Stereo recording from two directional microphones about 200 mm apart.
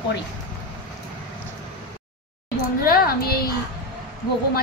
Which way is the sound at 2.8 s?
45° left (ahead or behind).